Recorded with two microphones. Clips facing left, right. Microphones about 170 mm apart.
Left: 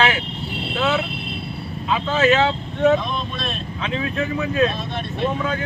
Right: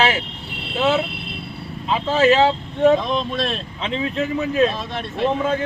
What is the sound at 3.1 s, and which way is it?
Speech, 90° right.